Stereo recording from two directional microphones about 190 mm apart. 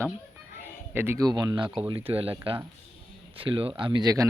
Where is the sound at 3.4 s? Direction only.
30° right (ahead or behind).